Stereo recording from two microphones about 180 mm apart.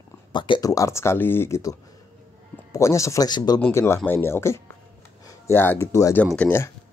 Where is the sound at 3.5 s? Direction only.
10° left (ahead or behind).